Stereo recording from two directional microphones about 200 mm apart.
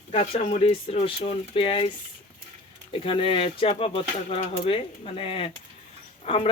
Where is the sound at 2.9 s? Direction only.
25° left (ahead or behind).